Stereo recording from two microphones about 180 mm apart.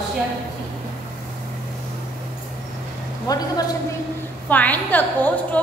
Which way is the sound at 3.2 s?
20° left (ahead or behind).